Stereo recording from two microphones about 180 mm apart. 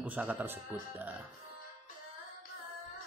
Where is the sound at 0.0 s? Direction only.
10° right (ahead or behind).